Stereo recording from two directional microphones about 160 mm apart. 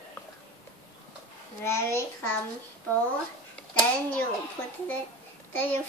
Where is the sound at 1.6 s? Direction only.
15° left (ahead or behind).